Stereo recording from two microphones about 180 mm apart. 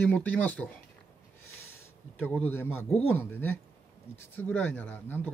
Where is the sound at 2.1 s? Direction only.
10° left (ahead or behind).